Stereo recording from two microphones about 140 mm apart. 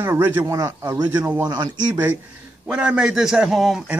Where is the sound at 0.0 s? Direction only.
15° right (ahead or behind).